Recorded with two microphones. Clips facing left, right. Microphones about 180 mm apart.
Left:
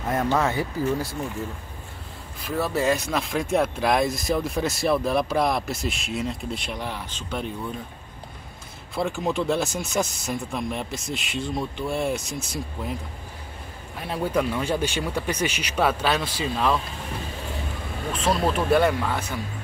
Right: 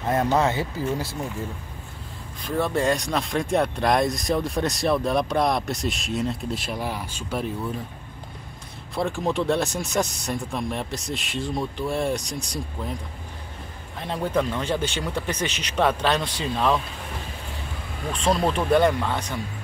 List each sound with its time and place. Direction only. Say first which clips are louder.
0.1 s speech: right 2 dB; 25° right (ahead or behind)
2.4 s speech: right 1 dB; 5° left (ahead or behind)
8.9 s speech: right 1 dB; centre (ahead or behind)
14.0 s speech: even; 10° left (ahead or behind)
18.1 s speech: right 1 dB; 5° left (ahead or behind)